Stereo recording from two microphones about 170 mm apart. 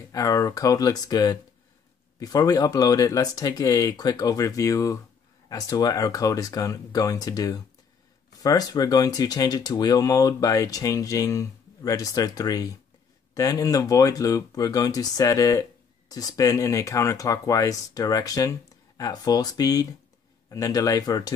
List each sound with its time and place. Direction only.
0.1 s speech: 20° left (ahead or behind)